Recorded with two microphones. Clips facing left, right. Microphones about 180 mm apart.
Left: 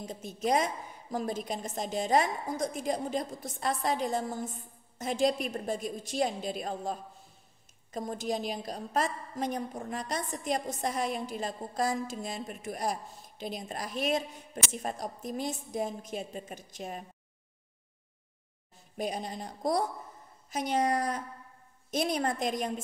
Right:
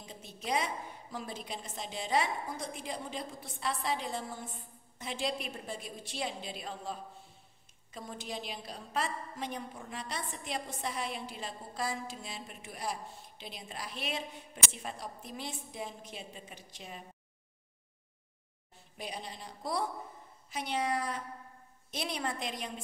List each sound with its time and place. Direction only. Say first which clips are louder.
0.0 s a woman's voice: left 10 dB; 45° left (ahead or behind)
18.9 s a woman's voice: left 8 dB; 45° left (ahead or behind)